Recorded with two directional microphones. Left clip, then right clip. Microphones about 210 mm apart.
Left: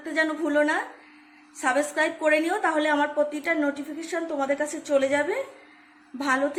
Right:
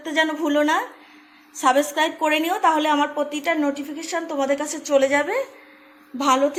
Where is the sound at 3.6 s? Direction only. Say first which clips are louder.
Right 3 dB; 20° right (ahead or behind).